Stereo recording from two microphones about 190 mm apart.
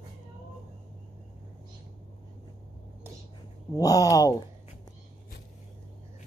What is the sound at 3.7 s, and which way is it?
Speech, 20° left (ahead or behind).